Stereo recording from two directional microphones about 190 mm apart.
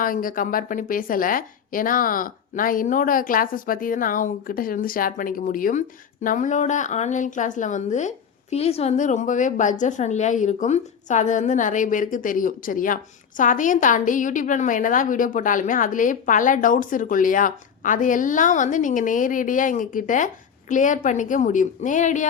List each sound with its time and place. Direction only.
0.0 s a woman's voice: 45° left (ahead or behind)